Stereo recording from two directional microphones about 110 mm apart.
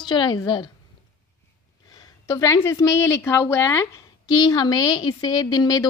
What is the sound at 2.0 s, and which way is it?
A woman's voice, 30° left (ahead or behind).